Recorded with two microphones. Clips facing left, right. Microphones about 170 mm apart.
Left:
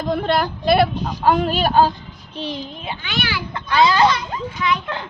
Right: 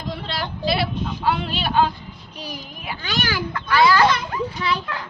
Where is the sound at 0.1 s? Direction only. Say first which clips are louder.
Left 10 dB; 55° left (ahead or behind).